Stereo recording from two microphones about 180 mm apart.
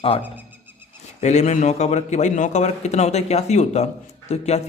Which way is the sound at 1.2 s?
40° left (ahead or behind).